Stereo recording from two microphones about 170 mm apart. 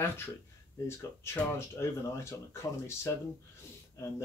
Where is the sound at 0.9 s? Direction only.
15° left (ahead or behind).